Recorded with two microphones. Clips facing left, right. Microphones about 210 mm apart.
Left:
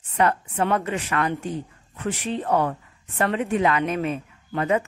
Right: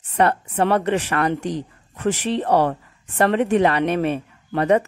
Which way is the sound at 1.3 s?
85° right.